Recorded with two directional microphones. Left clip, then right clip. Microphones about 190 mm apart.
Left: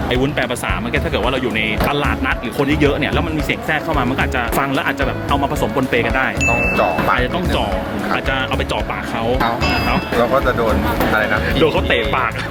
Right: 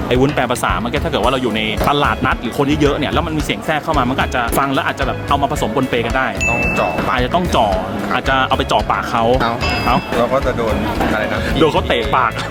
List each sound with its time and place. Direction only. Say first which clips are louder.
0.1 s speech: right 4 dB; 30° right (ahead or behind)
1.1 s speech: right 4 dB; 20° right (ahead or behind); by 6.7 s centre (ahead or behind)
7.2 s speech: right 4 dB; 30° right (ahead or behind)
10.2 s speech: even; 10° right (ahead or behind)
11.6 s speech: right 3 dB; 20° right (ahead or behind)